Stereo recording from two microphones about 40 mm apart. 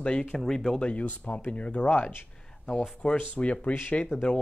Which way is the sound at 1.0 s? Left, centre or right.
Left.